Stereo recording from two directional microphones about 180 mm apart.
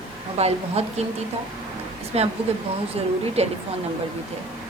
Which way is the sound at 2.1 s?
35° right (ahead or behind).